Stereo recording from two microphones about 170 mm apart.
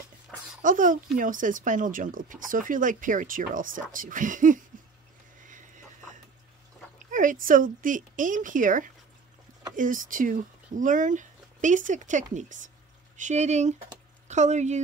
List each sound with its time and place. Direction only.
0.6 s speech: 50° right (ahead or behind)
7.1 s speech: 50° right (ahead or behind)